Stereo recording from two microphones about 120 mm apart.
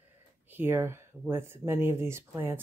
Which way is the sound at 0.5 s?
20° right (ahead or behind).